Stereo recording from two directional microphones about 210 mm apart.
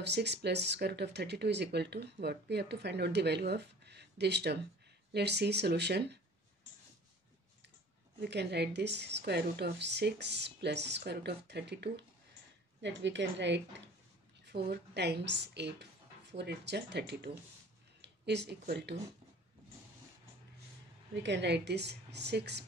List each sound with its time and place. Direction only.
0.0 s speech: 55° right (ahead or behind)
8.2 s speech: 55° right (ahead or behind)
21.1 s speech: 55° right (ahead or behind)